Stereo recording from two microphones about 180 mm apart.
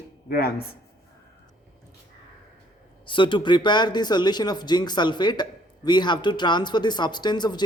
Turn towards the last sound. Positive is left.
turn(degrees=25)  # may be behind; listen again after turning